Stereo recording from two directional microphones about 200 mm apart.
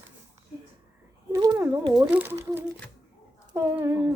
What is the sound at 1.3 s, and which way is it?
Speech, 20° right (ahead or behind).